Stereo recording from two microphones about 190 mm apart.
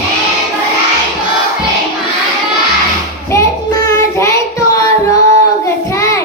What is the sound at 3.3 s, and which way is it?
Child singing, 15° left (ahead or behind).